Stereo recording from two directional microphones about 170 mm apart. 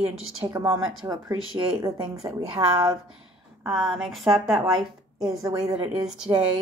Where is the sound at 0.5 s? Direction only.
20° right (ahead or behind).